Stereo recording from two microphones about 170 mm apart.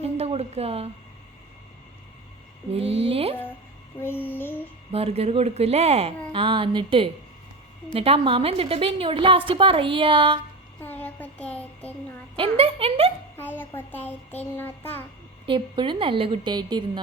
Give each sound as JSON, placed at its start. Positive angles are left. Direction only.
{"t": 0.0, "sound": "a sound", "side_deg": -35}
{"t": 2.7, "sound": "a woman's voice", "side_deg": -35}
{"t": 3.9, "sound": "music", "side_deg": 10}
{"t": 4.9, "sound": "a woman's voice", "side_deg": -35}
{"t": 10.8, "sound": "child singing", "side_deg": 10}
{"t": 12.4, "sound": "a woman's voice", "side_deg": -35}
{"t": 13.3, "sound": "music", "side_deg": 10}
{"t": 15.4, "sound": "a woman's voice", "side_deg": -30}